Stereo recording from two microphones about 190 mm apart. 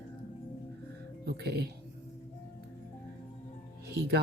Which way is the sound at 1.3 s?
60° right (ahead or behind).